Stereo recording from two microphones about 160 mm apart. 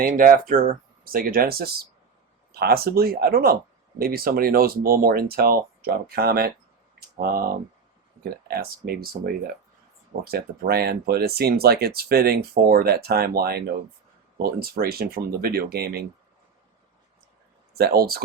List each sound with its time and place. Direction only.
0.0 s speech: 60° right (ahead or behind)
8.2 s speech: 70° right (ahead or behind)
17.7 s speech: 75° right (ahead or behind)